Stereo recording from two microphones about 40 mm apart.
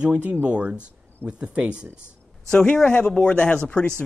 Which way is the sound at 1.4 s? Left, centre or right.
Right.